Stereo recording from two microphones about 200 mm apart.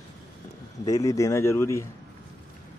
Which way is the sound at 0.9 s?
15° left (ahead or behind).